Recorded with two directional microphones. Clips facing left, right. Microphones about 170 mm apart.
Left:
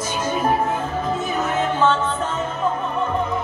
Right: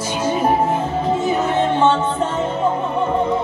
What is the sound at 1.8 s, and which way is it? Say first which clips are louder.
Music: right 3 dB; 25° right (ahead or behind).